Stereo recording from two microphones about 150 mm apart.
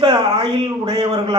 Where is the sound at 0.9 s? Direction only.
35° right (ahead or behind).